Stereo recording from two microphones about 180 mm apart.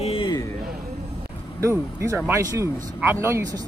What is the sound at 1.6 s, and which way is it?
Speech, 15° right (ahead or behind).